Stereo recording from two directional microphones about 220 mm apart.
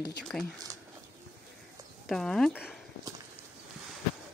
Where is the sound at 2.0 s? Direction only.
Centre (ahead or behind).